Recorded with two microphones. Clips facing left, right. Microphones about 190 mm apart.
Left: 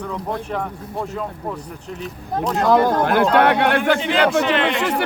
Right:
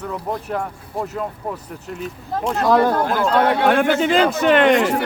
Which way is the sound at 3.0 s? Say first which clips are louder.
Left 2 dB; 65° left (ahead or behind).